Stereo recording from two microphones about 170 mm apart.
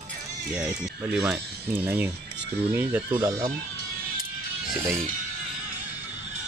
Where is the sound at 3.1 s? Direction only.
20° right (ahead or behind).